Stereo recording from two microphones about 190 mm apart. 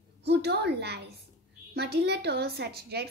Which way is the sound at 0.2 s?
60° right (ahead or behind).